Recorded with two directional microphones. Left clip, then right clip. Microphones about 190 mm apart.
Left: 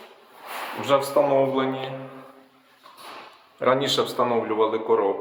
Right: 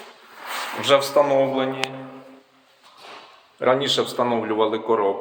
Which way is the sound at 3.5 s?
5° right (ahead or behind).